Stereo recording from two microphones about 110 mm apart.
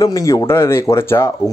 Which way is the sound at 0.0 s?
30° left (ahead or behind).